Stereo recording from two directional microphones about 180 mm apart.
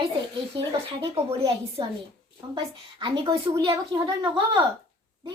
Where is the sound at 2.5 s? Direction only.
25° right (ahead or behind).